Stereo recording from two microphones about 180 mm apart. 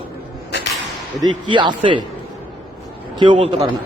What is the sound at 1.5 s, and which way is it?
Speech, 25° right (ahead or behind).